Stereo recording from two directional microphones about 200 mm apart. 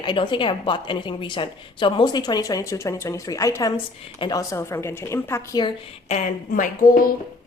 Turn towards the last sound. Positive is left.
turn(degrees=40)  # may be behind; listen again after turning